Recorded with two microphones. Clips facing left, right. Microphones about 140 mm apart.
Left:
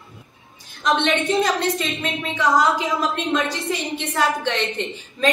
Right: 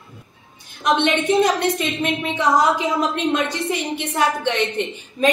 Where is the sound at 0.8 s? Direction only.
20° right (ahead or behind).